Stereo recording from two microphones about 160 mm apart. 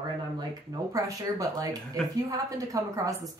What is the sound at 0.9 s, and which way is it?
A woman's voice, 20° right (ahead or behind).